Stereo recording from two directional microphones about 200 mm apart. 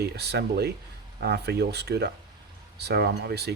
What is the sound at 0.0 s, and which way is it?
Speech, 55° right (ahead or behind).